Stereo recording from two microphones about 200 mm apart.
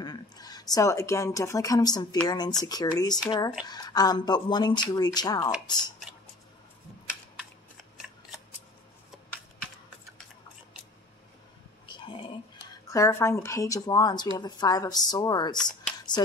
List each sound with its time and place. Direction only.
0.0 s speech: 20° left (ahead or behind)
11.9 s a sound: 25° left (ahead or behind)
12.8 s speech: 15° left (ahead or behind)
15.5 s speech: 5° left (ahead or behind)